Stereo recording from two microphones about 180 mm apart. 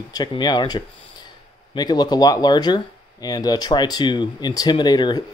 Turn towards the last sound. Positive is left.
turn(degrees=20)  # may be behind; listen again after turning